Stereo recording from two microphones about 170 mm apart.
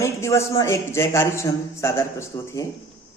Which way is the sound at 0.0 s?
15° left (ahead or behind).